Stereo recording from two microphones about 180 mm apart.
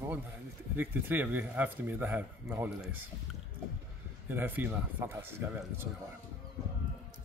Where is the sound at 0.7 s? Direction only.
10° right (ahead or behind).